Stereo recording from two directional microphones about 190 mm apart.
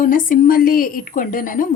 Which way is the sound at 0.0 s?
45° left (ahead or behind).